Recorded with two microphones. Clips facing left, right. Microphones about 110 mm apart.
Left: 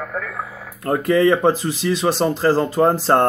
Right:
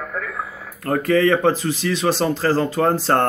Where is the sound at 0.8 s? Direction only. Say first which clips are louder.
Left 1 dB; 20° left (ahead or behind).